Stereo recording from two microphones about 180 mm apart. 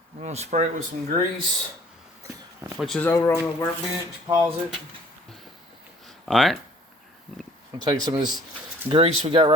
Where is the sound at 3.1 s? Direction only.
15° left (ahead or behind).